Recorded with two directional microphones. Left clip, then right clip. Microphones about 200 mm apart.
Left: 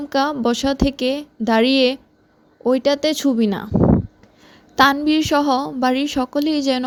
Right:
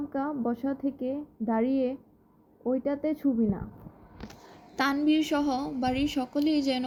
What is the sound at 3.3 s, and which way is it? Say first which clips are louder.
Speech: left 10 dB; 90° left.